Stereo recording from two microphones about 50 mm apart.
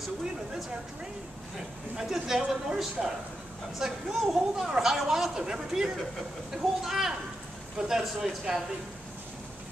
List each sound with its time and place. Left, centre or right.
2.0 s speech: centre